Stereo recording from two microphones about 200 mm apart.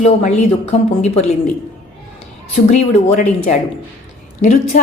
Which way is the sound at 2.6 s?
35° left (ahead or behind).